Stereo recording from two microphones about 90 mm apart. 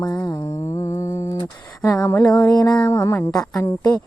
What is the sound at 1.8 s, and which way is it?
A woman's voice, 35° left (ahead or behind).